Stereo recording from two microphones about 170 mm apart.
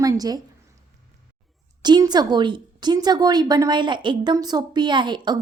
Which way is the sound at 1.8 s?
25° right (ahead or behind).